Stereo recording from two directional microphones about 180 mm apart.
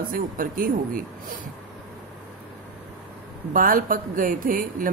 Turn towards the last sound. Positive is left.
turn(degrees=-50)  # may be behind; listen again after turning